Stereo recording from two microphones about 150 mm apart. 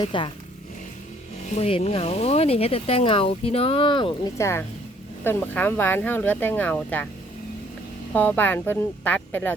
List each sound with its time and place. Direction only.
0.0 s speech: 35° left (ahead or behind)
1.5 s speech: 45° left (ahead or behind)
4.4 s speech: 20° left (ahead or behind)
8.1 s speech: 10° left (ahead or behind)